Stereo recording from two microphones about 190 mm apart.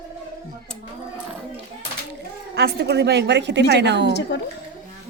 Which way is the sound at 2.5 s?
55° right (ahead or behind).